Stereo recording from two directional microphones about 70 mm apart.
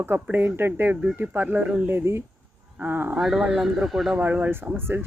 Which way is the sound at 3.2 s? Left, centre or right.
Centre.